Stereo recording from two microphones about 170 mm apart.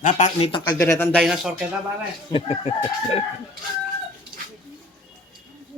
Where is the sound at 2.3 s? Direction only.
35° left (ahead or behind).